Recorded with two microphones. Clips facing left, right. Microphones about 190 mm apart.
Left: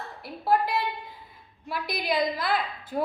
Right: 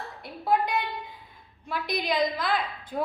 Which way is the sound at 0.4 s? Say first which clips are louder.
Left 1 dB; 5° left (ahead or behind).